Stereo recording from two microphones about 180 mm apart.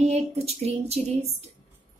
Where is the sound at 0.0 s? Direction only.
35° right (ahead or behind).